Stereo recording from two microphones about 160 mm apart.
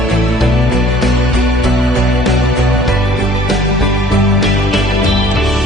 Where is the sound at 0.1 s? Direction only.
Centre (ahead or behind).